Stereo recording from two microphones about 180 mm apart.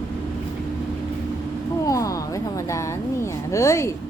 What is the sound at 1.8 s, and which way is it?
A woman's voice, 20° left (ahead or behind).